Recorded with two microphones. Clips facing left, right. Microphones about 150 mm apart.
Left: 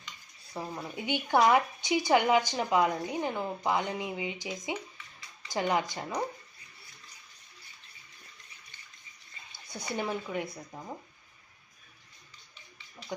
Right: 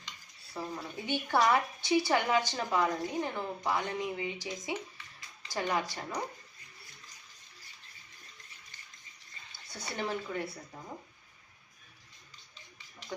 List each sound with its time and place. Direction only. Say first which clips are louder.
0.5 s a woman's voice: left 1 dB; 15° left (ahead or behind)
9.7 s a woman's voice: left 2 dB; 15° left (ahead or behind)